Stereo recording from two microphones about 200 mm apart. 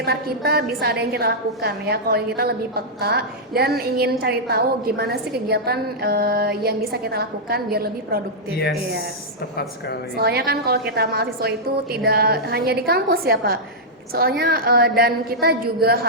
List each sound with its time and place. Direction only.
0.0 s a woman's voice: 50° right (ahead or behind)
10.2 s a woman's voice: 50° right (ahead or behind)